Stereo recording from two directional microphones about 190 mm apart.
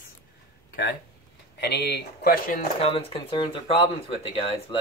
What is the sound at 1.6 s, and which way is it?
Speech, 60° left (ahead or behind).